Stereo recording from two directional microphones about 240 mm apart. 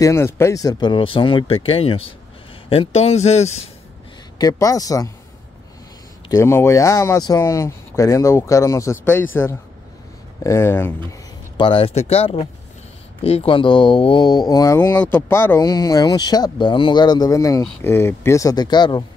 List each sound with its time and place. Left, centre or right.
0.0 s speech: centre; by 3.7 s left
4.4 s speech: centre
6.2 s speech: centre
11.5 s speech: left